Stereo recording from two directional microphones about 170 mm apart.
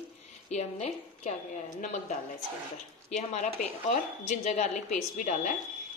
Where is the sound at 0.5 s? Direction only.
40° left (ahead or behind).